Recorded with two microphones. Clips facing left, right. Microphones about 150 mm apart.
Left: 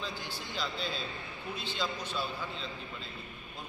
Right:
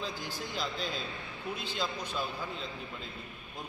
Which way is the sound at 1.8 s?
10° right (ahead or behind).